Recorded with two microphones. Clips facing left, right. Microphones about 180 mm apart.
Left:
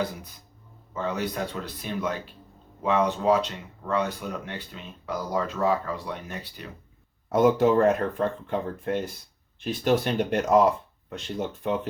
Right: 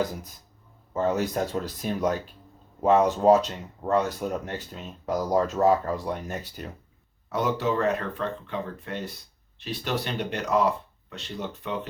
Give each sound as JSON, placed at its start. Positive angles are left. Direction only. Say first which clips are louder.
{"t": 0.9, "sound": "speech", "louder": "right 4 dB", "side_deg": -45}
{"t": 7.3, "sound": "speech", "louder": "left 6 dB", "side_deg": 50}